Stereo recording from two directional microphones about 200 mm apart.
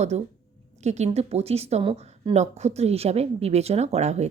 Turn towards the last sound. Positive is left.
turn(degrees=-35)  # may be behind; listen again after turning